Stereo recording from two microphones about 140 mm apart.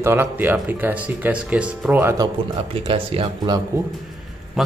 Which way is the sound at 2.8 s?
40° right (ahead or behind).